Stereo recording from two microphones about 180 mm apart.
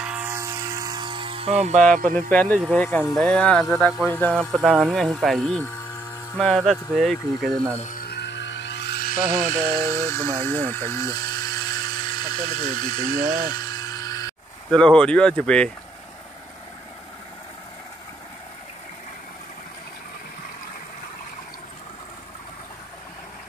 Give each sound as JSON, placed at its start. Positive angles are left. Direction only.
{"t": 0.0, "sound": "music", "side_deg": -10}
{"t": 2.3, "sound": "speech", "side_deg": 10}
{"t": 4.6, "sound": "speech", "side_deg": -5}
{"t": 7.9, "sound": "music", "side_deg": 65}
{"t": 9.8, "sound": "speech", "side_deg": 15}
{"t": 10.4, "sound": "a sound", "side_deg": 10}
{"t": 12.7, "sound": "speech", "side_deg": 30}
{"t": 13.2, "sound": "speech", "side_deg": -55}
{"t": 13.5, "sound": "a sound", "side_deg": 20}
{"t": 14.7, "sound": "speech", "side_deg": 5}